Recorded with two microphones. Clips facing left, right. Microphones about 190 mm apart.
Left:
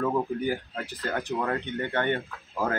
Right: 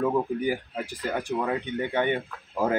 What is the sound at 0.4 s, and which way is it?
Speech, 10° right (ahead or behind).